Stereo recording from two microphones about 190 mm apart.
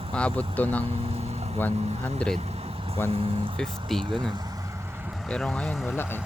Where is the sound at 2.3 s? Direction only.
35° right (ahead or behind).